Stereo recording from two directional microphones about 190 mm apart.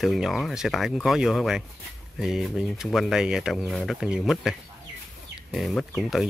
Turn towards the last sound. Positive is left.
turn(degrees=0)  # may be behind; listen again after turning